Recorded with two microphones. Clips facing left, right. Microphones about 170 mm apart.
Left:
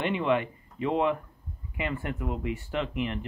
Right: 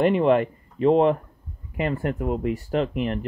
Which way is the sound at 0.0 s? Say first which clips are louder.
Right 8 dB; 40° right (ahead or behind).